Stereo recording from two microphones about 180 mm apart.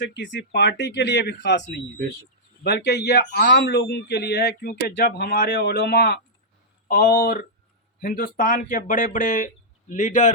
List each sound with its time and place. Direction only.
0.0 s speech: 85° left
2.6 s a man's voice: 65° left (ahead or behind); by 10.3 s 45° left (ahead or behind)